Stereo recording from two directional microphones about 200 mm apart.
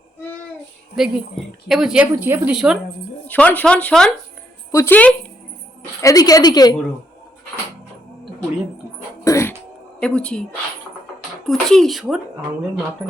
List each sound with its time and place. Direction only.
0.9 s a woman's voice: centre (ahead or behind)
3.2 s a woman's voice: 10° left (ahead or behind)
9.2 s a sound: 15° left (ahead or behind)
10.0 s a woman's voice: 5° left (ahead or behind)
11.4 s a woman's voice: centre (ahead or behind)